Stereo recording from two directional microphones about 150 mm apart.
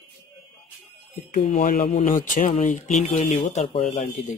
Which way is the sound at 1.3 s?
55° left (ahead or behind).